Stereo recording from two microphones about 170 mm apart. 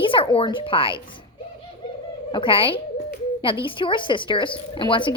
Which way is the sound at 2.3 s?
30° left (ahead or behind).